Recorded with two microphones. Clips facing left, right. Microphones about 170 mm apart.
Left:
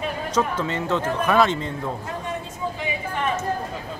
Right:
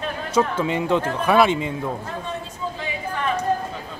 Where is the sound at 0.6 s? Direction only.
15° right (ahead or behind).